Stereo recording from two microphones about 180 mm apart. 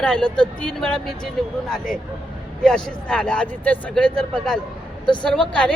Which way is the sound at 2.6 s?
5° left (ahead or behind).